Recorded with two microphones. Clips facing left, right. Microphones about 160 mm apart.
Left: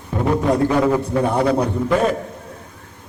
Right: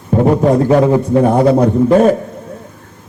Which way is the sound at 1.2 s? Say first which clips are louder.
Right 7 dB; 35° right (ahead or behind).